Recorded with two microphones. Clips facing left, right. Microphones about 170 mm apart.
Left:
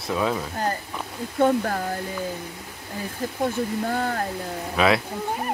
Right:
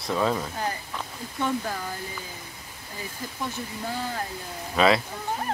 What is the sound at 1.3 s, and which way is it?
Speech, 50° left (ahead or behind).